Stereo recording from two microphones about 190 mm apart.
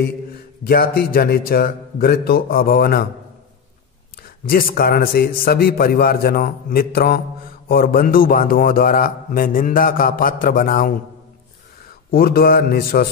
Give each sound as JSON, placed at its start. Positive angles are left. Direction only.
{"t": 0.7, "sound": "a man's voice", "side_deg": 50}
{"t": 4.5, "sound": "a man's voice", "side_deg": 50}
{"t": 12.1, "sound": "a man's voice", "side_deg": 50}